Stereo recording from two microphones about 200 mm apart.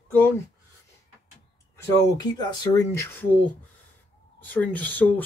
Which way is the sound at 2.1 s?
20° left (ahead or behind).